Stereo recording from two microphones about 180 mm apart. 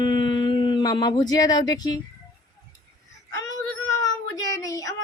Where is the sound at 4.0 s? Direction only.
20° left (ahead or behind).